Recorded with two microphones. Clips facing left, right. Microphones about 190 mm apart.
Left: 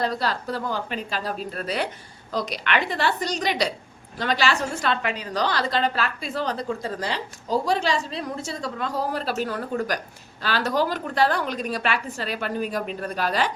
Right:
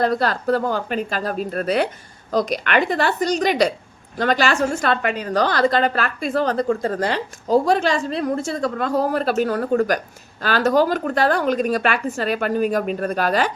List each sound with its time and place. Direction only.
0.0 s a woman's voice: 55° right (ahead or behind)